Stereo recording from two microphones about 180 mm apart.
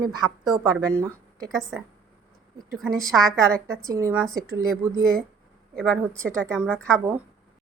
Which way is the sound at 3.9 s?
15° right (ahead or behind).